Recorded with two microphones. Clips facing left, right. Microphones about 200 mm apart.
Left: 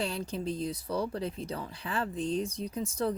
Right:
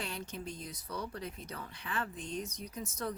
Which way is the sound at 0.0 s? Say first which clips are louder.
Left 8 dB; 30° left (ahead or behind).